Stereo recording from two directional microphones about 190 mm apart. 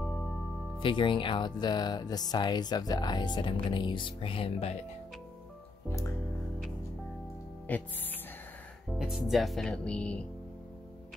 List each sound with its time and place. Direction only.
0.0 s music: centre (ahead or behind)
0.7 s speech: 25° left (ahead or behind)
5.9 s music: 15° left (ahead or behind)
7.7 s speech: 10° left (ahead or behind)